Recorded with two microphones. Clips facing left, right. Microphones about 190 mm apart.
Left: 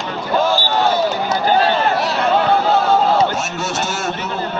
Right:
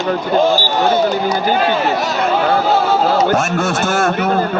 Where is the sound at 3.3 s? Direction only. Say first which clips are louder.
Right 7 dB; 55° right (ahead or behind).